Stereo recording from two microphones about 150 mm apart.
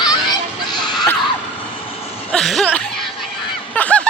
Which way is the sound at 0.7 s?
Centre (ahead or behind).